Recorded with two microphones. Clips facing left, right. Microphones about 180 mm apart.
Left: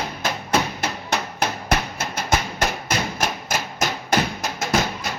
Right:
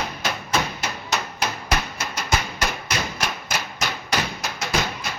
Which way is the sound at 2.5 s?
50° left (ahead or behind).